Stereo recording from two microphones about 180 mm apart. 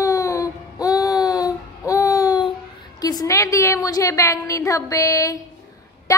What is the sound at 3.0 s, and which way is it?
A child's voice, 20° left (ahead or behind).